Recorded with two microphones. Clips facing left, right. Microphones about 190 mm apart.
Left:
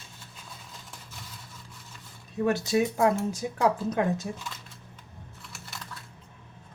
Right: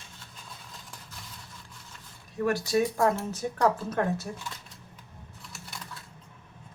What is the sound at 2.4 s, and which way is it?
Speech, 25° left (ahead or behind).